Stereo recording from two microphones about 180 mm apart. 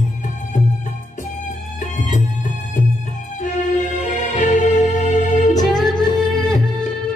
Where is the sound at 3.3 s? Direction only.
45° left (ahead or behind).